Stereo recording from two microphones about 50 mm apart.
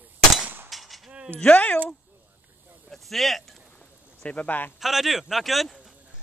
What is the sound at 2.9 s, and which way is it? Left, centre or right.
Speech, centre.